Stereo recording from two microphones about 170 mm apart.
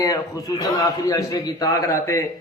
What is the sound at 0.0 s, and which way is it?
A man's voice, 20° left (ahead or behind).